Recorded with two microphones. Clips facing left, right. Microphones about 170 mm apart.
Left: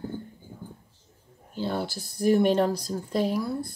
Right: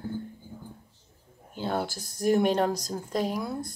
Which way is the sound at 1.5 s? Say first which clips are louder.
Even; 50° right (ahead or behind).